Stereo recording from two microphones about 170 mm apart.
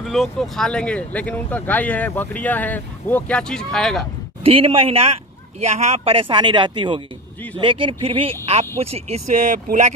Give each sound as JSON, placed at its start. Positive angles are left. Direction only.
{"t": 0.0, "sound": "speech", "side_deg": 0}
{"t": 4.4, "sound": "speech", "side_deg": -35}
{"t": 9.3, "sound": "speech", "side_deg": -45}